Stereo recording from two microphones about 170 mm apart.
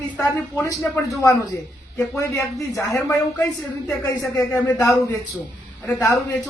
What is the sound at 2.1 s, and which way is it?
Speech, 20° left (ahead or behind).